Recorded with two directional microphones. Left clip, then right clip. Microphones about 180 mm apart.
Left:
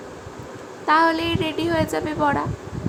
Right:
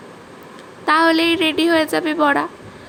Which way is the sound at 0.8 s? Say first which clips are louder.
Right 3 dB; 20° right (ahead or behind).